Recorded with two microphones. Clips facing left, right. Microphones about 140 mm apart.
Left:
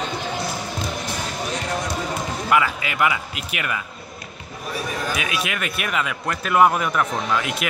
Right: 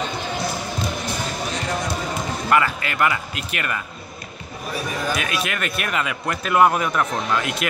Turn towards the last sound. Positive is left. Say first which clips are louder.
# even
turn(degrees=5)  # may be behind; listen again after turning